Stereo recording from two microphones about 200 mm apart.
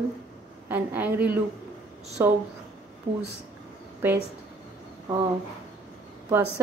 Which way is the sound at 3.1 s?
25° right (ahead or behind).